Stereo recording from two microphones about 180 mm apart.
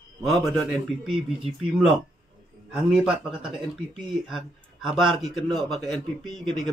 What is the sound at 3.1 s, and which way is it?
Speech, 30° right (ahead or behind).